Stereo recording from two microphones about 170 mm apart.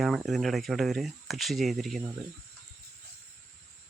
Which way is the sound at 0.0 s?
Centre (ahead or behind).